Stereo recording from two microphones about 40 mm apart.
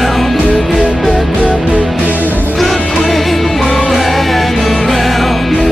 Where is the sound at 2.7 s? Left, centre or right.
Centre.